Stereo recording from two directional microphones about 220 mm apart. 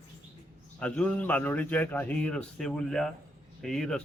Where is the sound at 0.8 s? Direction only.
5° left (ahead or behind).